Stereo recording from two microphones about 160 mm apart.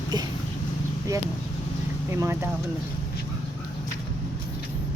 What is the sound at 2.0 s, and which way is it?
Speech, 15° right (ahead or behind).